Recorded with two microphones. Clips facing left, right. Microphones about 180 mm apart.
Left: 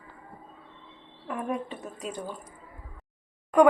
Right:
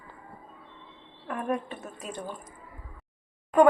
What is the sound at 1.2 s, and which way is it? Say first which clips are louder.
Speech: right 1 dB; 15° left (ahead or behind).